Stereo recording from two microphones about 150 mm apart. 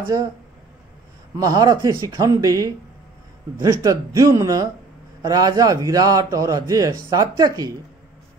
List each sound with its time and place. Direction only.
1.4 s a man's voice: 25° right (ahead or behind)